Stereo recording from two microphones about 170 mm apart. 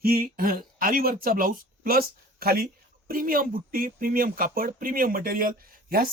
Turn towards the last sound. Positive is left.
turn(degrees=-60)  # may be behind; listen again after turning